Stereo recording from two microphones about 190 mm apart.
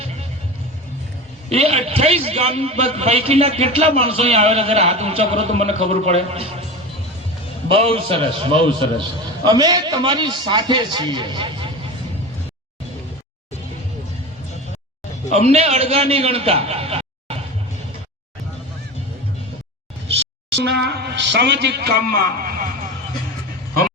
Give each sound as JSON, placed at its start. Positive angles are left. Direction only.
{"t": 1.5, "sound": "a man's voice", "side_deg": -35}
{"t": 7.7, "sound": "a man's voice", "side_deg": -30}
{"t": 15.4, "sound": "a man's voice", "side_deg": -35}
{"t": 20.7, "sound": "a man's voice", "side_deg": -60}